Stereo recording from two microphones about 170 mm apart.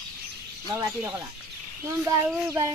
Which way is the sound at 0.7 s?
15° right (ahead or behind).